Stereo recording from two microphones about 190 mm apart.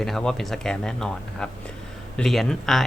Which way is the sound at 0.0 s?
Centre (ahead or behind).